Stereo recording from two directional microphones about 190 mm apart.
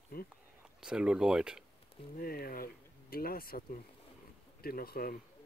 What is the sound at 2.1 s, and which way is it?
Speech, 50° left (ahead or behind).